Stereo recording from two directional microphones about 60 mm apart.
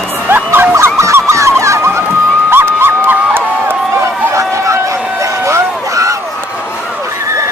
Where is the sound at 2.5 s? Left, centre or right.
Right.